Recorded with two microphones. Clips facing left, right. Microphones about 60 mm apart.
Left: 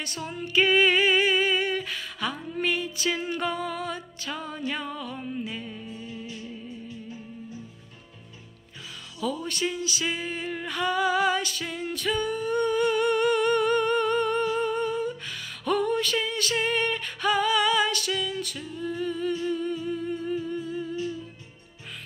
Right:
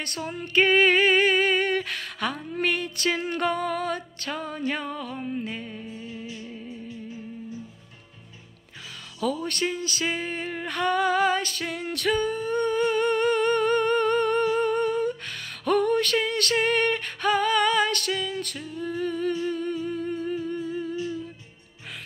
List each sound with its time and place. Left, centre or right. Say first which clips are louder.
0.0 s female singing: right 1 dB; right
5.4 s music: right 1 dB; right
5.9 s music: right 1 dB; right
9.5 s music: right 1 dB; right
12.1 s humming: right 2 dB; right